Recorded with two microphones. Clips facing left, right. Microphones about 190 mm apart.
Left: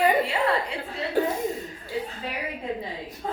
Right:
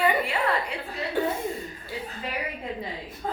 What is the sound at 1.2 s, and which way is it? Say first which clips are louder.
Speech: left 2 dB; 40° left (ahead or behind).